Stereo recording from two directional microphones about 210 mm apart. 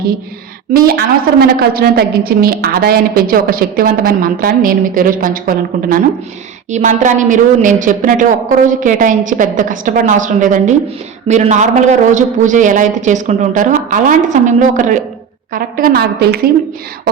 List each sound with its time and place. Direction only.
0.7 s a woman's voice: 45° right (ahead or behind)